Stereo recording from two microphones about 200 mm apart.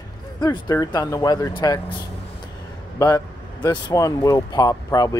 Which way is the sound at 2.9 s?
15° left (ahead or behind).